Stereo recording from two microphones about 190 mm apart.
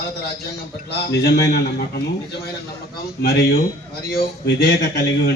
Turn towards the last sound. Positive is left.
turn(degrees=55)  # may be behind; listen again after turning